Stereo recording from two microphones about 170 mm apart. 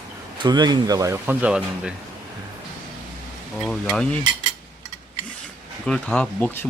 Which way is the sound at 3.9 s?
5° left (ahead or behind).